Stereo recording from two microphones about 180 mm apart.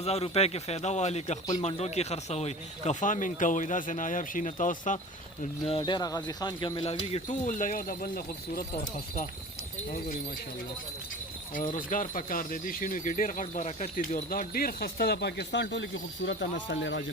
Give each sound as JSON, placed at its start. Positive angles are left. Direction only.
{"t": 0.0, "sound": "speech", "side_deg": 35}
{"t": 5.6, "sound": "speech", "side_deg": 30}
{"t": 11.5, "sound": "speech", "side_deg": 45}